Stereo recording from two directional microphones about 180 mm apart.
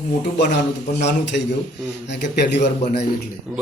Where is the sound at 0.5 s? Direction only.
75° left (ahead or behind).